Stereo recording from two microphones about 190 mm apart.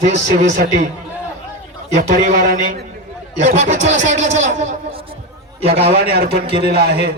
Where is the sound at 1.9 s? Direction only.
45° right (ahead or behind); by 5.2 s 30° right (ahead or behind).